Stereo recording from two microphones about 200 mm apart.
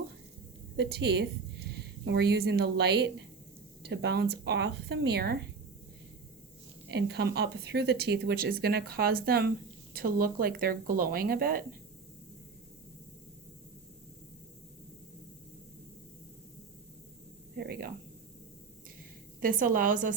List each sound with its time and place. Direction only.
0.8 s a woman's voice: 55° right (ahead or behind)
6.8 s speech: 55° right (ahead or behind)
17.6 s a sound: 50° right (ahead or behind)
19.4 s speech: 45° right (ahead or behind)